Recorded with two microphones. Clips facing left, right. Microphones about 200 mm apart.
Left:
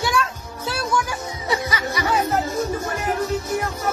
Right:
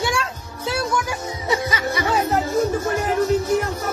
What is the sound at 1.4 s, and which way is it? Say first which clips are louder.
Music: right 2 dB; 20° right (ahead or behind).